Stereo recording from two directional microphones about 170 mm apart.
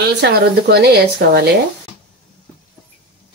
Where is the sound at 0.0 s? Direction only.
70° right (ahead or behind).